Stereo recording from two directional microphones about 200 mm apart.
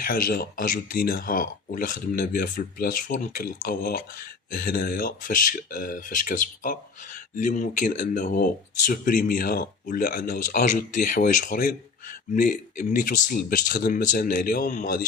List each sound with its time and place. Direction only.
0.0 s speech: 45° left (ahead or behind)